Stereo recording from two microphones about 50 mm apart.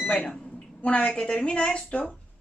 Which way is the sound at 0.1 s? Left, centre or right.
Centre.